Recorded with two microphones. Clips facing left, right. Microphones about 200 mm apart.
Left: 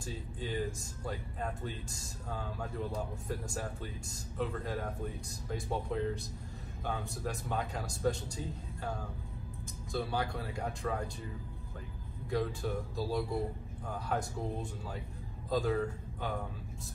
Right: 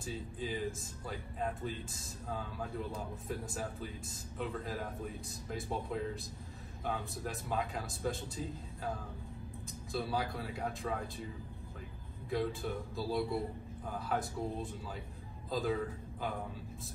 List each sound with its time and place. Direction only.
0.0 s speech: centre (ahead or behind)
10.1 s speech: centre (ahead or behind)
12.3 s a man's voice: centre (ahead or behind)